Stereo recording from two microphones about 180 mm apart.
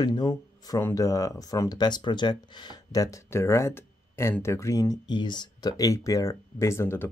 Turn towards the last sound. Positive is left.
turn(degrees=15)  # may be behind; listen again after turning